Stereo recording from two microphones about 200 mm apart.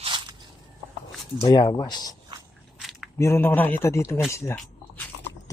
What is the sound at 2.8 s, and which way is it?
Biting, centre (ahead or behind).